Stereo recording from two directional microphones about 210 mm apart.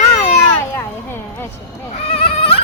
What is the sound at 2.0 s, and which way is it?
Goat, 25° left (ahead or behind).